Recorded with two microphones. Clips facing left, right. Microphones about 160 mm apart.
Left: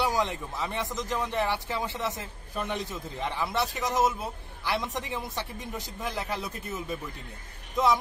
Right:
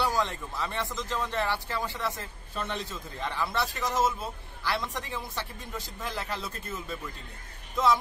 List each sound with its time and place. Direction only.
0.0 s speech: 20° left (ahead or behind)